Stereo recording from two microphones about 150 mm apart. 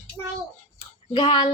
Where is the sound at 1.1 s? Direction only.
35° left (ahead or behind).